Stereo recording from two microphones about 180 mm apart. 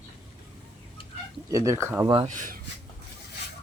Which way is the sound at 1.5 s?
15° right (ahead or behind).